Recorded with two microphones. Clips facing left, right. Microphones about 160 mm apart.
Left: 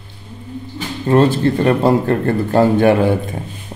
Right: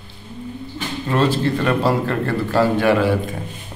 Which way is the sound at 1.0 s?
50° left (ahead or behind).